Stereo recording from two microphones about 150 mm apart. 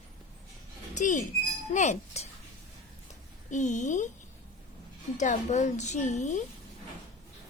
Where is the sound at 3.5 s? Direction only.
55° left (ahead or behind).